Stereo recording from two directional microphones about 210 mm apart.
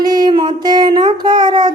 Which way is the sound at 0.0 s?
20° right (ahead or behind).